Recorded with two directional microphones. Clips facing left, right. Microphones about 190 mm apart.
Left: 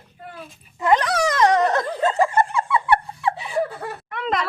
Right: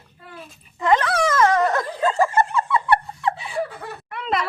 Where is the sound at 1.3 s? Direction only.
20° left (ahead or behind).